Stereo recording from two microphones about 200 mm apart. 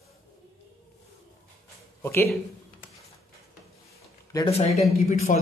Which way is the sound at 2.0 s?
15° left (ahead or behind).